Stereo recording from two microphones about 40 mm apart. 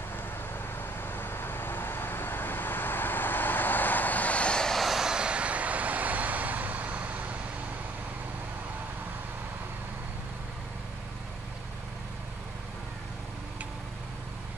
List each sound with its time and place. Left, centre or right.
0.7 s vehicle: left
4.5 s vehicle: centre
4.7 s vehicle: centre
5.0 s vehicle: right